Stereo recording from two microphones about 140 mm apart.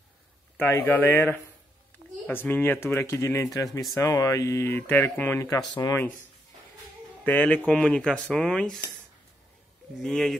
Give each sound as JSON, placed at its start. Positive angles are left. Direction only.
{"t": 0.6, "sound": "speech", "side_deg": 15}
{"t": 7.2, "sound": "speech", "side_deg": 10}
{"t": 9.9, "sound": "speech", "side_deg": 5}